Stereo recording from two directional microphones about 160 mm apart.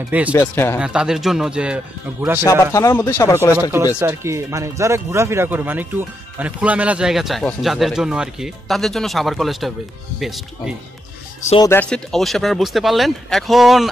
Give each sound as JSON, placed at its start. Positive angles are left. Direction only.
{"t": 0.3, "sound": "speech", "side_deg": 15}
{"t": 0.7, "sound": "speech", "side_deg": -5}
{"t": 2.4, "sound": "speech", "side_deg": 20}
{"t": 3.7, "sound": "speech", "side_deg": -15}
{"t": 11.9, "sound": "speech", "side_deg": 0}